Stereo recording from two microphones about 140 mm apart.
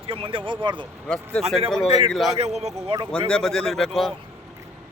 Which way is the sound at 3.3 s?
5° left (ahead or behind).